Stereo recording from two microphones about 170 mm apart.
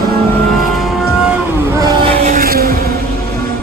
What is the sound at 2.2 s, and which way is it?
Vehicle, 55° right (ahead or behind).